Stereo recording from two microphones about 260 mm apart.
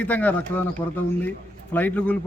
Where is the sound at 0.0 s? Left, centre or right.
Centre.